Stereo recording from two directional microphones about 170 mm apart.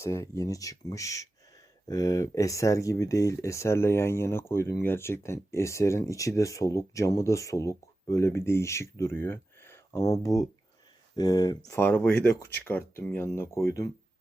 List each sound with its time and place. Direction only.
0.0 s speech: 15° left (ahead or behind)
11.8 s speech: 10° left (ahead or behind)